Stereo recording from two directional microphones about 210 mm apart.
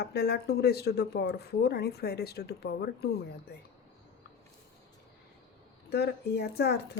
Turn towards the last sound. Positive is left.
turn(degrees=50)  # may be behind; listen again after turning